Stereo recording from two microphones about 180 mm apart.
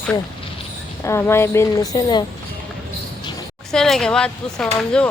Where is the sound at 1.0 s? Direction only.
15° left (ahead or behind).